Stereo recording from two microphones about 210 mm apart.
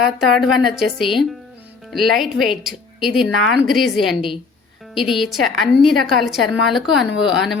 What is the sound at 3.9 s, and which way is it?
Speech, 25° left (ahead or behind).